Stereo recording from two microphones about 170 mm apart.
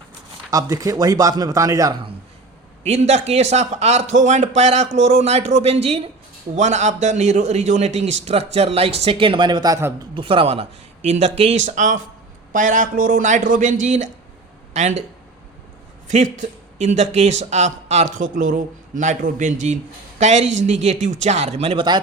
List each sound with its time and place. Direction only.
0.5 s speech: 20° right (ahead or behind)
2.8 s speech: 40° right (ahead or behind); by 9.9 s 20° right (ahead or behind)
10.2 s speech: 30° right (ahead or behind)
16.0 s speech: 45° right (ahead or behind); by 22.0 s 30° right (ahead or behind)